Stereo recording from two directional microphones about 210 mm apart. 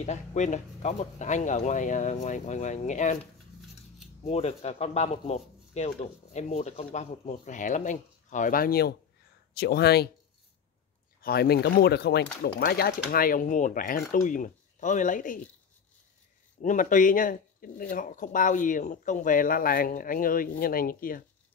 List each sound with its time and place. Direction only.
0.0 s speech: 35° left (ahead or behind)
4.2 s speech: 30° left (ahead or behind); by 10.0 s 50° left (ahead or behind)
11.1 s speech: 45° left (ahead or behind)
16.6 s speech: 40° left (ahead or behind)